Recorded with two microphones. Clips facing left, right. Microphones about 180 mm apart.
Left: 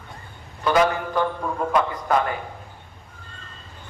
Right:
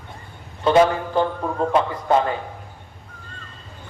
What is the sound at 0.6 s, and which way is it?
A man's voice, 25° right (ahead or behind).